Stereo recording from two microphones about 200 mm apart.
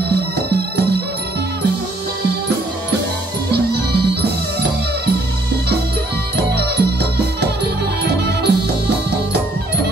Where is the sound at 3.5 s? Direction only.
55° right (ahead or behind).